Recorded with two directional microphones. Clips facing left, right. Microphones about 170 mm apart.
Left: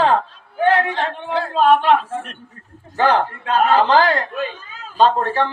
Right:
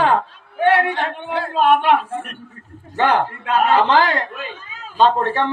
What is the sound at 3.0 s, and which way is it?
A man's voice, 35° left (ahead or behind).